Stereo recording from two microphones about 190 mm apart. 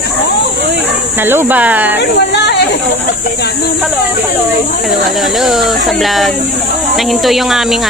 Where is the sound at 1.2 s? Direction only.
10° right (ahead or behind).